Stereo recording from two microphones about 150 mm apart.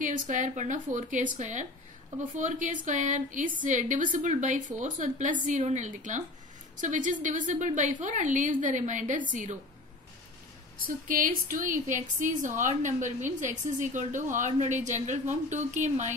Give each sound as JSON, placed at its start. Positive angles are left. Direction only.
{"t": 0.0, "sound": "a woman's voice", "side_deg": -60}
{"t": 11.1, "sound": "a woman's voice", "side_deg": -65}